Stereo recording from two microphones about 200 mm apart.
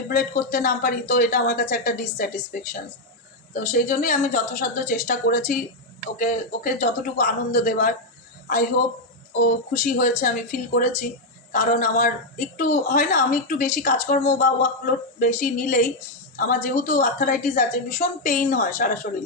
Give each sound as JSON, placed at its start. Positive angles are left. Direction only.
{"t": 0.1, "sound": "speech", "side_deg": 50}
{"t": 9.4, "sound": "speech", "side_deg": 45}